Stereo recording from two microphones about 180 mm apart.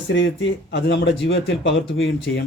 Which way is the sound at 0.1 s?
90° left.